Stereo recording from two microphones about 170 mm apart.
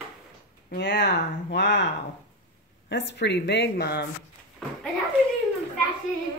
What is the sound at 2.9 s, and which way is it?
Speech, 90° left.